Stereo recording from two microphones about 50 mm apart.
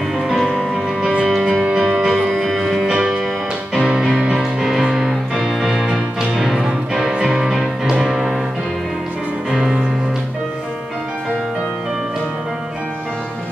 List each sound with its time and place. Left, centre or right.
0.2 s music: centre
1.4 s music: right
2.0 s music: centre
7.2 s music: centre
7.4 s music: centre
9.5 s music: centre